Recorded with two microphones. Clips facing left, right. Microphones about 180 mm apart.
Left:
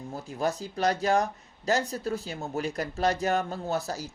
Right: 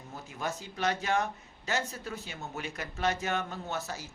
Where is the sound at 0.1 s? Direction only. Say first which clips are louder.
Left 7 dB; 35° left (ahead or behind).